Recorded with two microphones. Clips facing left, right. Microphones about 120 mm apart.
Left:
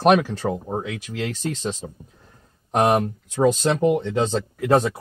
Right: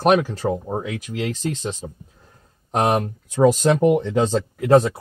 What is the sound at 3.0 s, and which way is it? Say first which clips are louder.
Speech: right 3 dB; 10° right (ahead or behind).